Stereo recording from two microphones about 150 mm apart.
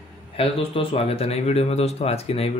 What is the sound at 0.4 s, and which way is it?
Speech, 40° left (ahead or behind).